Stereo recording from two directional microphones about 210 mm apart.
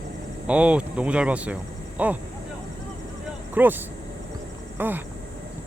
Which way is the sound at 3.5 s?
10° right (ahead or behind).